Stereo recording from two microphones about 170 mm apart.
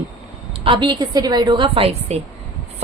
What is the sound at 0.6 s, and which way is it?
A woman's voice, 30° right (ahead or behind).